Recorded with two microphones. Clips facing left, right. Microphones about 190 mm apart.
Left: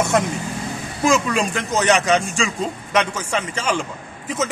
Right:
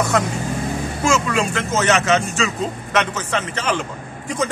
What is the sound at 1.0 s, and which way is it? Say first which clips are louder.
A man's voice: left 1 dB; 15° left (ahead or behind).